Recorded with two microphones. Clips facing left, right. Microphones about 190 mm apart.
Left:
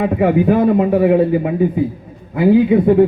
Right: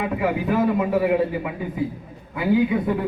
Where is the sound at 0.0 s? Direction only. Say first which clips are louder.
Left 9 dB; 35° left (ahead or behind).